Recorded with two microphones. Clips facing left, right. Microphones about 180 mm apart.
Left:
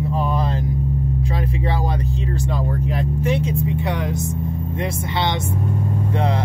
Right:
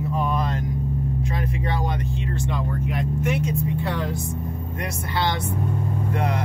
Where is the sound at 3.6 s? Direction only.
20° left (ahead or behind).